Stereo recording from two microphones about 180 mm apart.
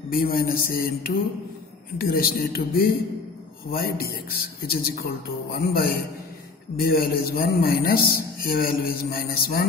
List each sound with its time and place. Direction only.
0.1 s a man's voice: 55° left (ahead or behind)
2.0 s a man's voice: 55° left (ahead or behind)